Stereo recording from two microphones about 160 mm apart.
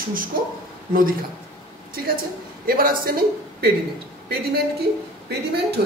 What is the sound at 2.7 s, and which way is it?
Speech, 65° right (ahead or behind).